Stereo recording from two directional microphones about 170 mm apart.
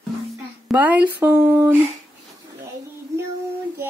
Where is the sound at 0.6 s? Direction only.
10° right (ahead or behind).